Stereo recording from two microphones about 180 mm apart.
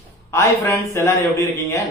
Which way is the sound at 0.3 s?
15° left (ahead or behind).